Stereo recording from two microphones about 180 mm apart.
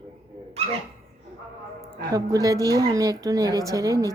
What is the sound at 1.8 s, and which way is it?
Speech, 20° right (ahead or behind).